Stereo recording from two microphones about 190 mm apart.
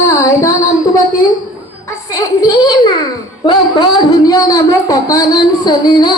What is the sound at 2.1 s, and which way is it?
Speech, 20° left (ahead or behind).